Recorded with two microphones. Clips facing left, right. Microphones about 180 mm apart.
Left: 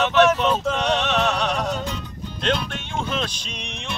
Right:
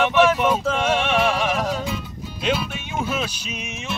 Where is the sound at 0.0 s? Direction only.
10° right (ahead or behind).